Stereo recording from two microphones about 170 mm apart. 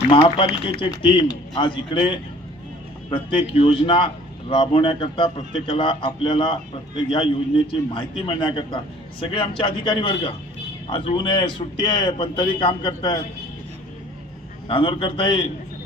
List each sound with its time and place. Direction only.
0.1 s speech: 30° left (ahead or behind)
3.1 s a man's voice: 30° left (ahead or behind)
14.7 s a man's voice: 30° left (ahead or behind)